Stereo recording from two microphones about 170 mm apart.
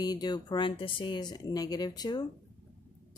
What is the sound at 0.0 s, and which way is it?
Speech, 25° left (ahead or behind).